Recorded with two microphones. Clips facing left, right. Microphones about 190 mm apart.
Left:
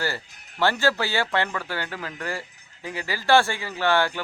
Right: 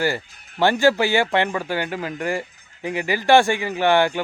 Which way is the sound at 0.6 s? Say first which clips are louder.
Right 6 dB; 15° right (ahead or behind).